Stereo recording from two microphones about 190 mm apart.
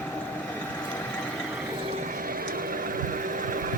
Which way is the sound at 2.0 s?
45° right (ahead or behind).